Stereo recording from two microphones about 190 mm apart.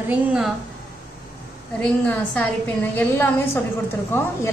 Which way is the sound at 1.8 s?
5° left (ahead or behind).